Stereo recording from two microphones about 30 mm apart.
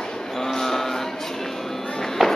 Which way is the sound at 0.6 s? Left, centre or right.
Centre.